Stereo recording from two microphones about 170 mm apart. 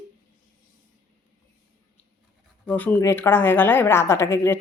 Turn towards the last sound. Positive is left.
turn(degrees=15)  # may be behind; listen again after turning